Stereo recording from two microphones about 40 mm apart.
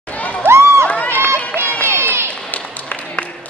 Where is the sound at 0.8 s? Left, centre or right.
Left.